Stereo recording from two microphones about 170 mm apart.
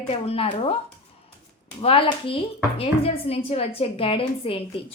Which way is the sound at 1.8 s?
35° left (ahead or behind).